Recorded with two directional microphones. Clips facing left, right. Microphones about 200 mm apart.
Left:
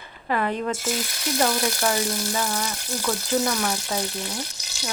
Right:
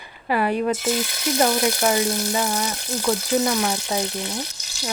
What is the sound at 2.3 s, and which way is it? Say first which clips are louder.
A woman's voice: right 3 dB; 20° right (ahead or behind).